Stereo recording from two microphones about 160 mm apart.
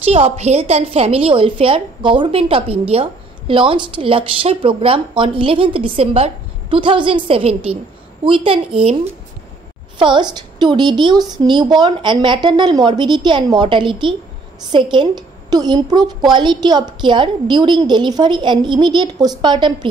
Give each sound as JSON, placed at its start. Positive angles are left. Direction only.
{"t": 0.0, "sound": "a woman's voice", "side_deg": -40}